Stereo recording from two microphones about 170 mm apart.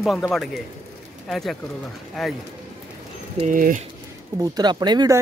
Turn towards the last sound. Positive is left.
turn(degrees=-20)  # may be behind; listen again after turning